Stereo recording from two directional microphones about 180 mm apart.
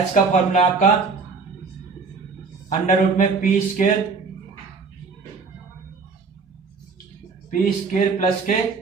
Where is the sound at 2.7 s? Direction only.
40° left (ahead or behind).